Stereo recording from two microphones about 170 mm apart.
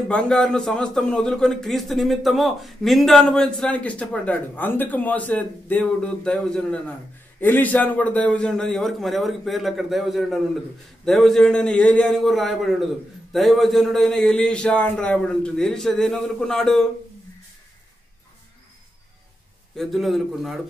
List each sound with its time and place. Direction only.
0.1 s a man's voice: 5° left (ahead or behind)
19.8 s a man's voice: centre (ahead or behind)